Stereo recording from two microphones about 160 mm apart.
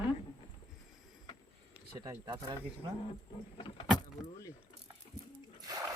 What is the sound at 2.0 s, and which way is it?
Speech, 25° right (ahead or behind).